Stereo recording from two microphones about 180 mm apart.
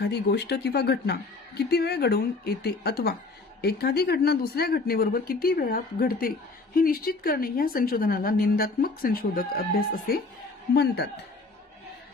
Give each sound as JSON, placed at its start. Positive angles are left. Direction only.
{"t": 0.0, "sound": "speech", "side_deg": 70}